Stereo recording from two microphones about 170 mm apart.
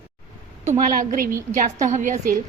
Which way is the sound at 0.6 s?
50° right (ahead or behind).